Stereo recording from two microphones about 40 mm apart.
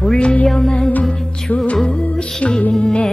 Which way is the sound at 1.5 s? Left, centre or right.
Left.